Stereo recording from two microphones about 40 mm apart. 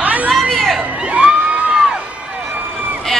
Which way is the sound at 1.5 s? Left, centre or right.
Right.